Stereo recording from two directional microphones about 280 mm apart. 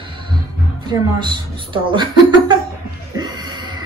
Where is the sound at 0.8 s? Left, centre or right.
Centre.